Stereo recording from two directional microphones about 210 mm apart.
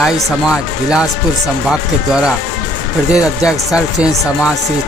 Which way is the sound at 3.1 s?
Centre (ahead or behind).